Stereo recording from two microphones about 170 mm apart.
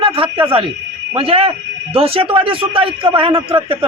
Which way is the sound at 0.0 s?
30° right (ahead or behind).